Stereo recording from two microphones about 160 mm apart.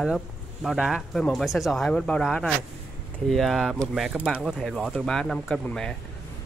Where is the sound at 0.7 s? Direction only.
Centre (ahead or behind).